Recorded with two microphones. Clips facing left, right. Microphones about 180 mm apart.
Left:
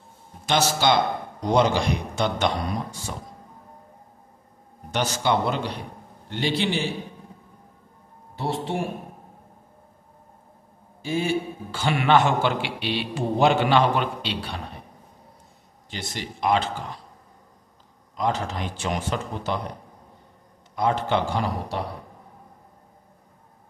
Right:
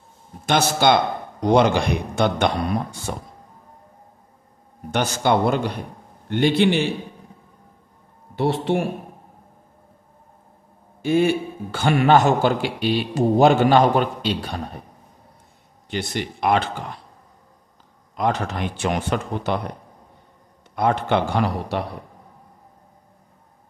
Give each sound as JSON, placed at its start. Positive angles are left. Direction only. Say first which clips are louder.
{"t": 0.5, "sound": "a man's voice", "louder": "right 4 dB", "side_deg": -55}
{"t": 4.9, "sound": "a man's voice", "louder": "right 4 dB", "side_deg": -50}
{"t": 8.4, "sound": "speech", "louder": "right 6 dB", "side_deg": -65}
{"t": 11.0, "sound": "a man's voice", "louder": "right 6 dB", "side_deg": -60}
{"t": 15.9, "sound": "a man's voice", "louder": "right 7 dB", "side_deg": -60}
{"t": 18.1, "sound": "a man's voice", "louder": "right 3 dB", "side_deg": -60}
{"t": 20.7, "sound": "a man's voice", "louder": "right 3 dB", "side_deg": -60}